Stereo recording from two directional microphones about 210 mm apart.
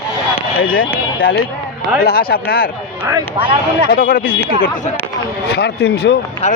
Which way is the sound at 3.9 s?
40° left (ahead or behind).